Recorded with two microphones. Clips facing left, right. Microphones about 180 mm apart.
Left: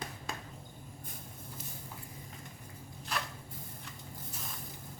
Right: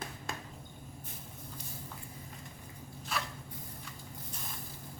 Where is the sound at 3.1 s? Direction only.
Centre (ahead or behind).